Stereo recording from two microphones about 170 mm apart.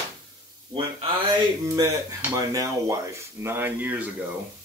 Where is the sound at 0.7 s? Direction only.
30° right (ahead or behind); by 4.0 s 10° right (ahead or behind).